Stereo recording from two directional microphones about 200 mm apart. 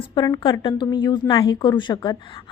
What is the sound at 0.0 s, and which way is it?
A woman's voice, 20° left (ahead or behind).